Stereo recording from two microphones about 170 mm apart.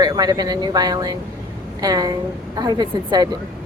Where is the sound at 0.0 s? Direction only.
20° right (ahead or behind).